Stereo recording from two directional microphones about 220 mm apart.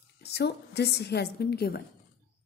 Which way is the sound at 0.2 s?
50° left (ahead or behind).